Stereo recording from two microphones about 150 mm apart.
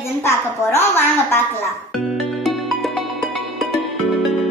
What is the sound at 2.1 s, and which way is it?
Music, centre (ahead or behind).